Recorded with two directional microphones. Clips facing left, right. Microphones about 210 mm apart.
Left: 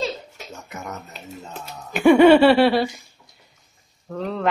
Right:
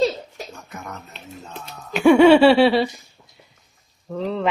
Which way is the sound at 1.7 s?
5° left (ahead or behind).